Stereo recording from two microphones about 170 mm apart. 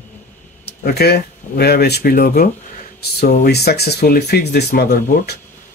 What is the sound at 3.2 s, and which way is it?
Speech, 65° left (ahead or behind).